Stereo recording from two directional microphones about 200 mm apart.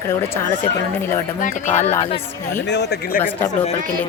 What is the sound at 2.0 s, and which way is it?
Speech, 25° left (ahead or behind).